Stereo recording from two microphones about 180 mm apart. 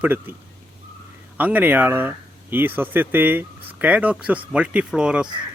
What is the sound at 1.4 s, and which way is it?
Speech, 10° right (ahead or behind).